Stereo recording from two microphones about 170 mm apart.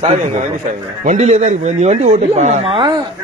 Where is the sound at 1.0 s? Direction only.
45° right (ahead or behind).